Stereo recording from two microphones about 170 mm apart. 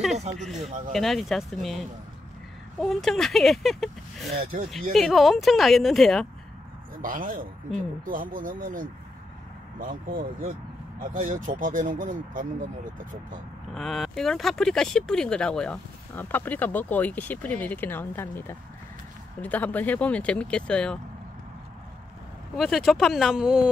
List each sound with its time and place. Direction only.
0.9 s speech: centre (ahead or behind)
4.5 s speech: 50° right (ahead or behind)
4.9 s speech: centre (ahead or behind)
7.0 s speech: 55° right (ahead or behind)
13.7 s speech: centre (ahead or behind)
22.6 s speech: centre (ahead or behind)